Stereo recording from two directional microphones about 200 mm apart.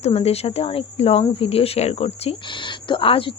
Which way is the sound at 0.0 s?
30° left (ahead or behind).